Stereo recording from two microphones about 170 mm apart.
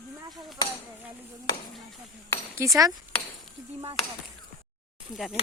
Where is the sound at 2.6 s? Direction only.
15° right (ahead or behind).